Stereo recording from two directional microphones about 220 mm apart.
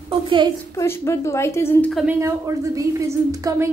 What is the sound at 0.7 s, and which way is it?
A woman's voice, 10° left (ahead or behind).